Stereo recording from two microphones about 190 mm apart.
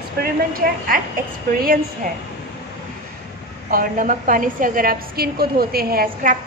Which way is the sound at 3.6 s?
45° right (ahead or behind).